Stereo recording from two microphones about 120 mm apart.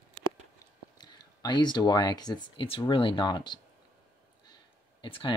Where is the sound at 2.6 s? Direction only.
45° left (ahead or behind).